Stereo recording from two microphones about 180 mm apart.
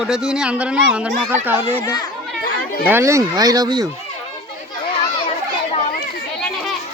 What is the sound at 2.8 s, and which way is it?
Speech, 15° right (ahead or behind).